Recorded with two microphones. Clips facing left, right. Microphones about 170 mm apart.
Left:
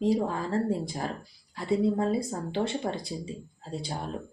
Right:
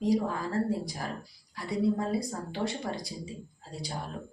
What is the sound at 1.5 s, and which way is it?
Speech, 25° left (ahead or behind).